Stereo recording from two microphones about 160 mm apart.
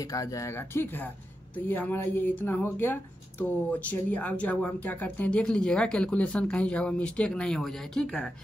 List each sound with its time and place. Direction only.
0.0 s speech: 20° left (ahead or behind); by 8.3 s 5° left (ahead or behind)